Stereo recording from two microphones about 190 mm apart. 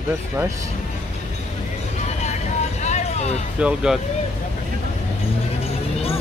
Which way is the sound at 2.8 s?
35° left (ahead or behind).